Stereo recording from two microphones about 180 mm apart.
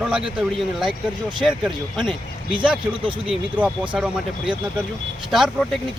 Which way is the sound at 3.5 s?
5° right (ahead or behind).